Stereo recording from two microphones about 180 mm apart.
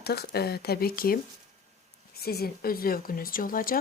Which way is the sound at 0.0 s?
60° left (ahead or behind).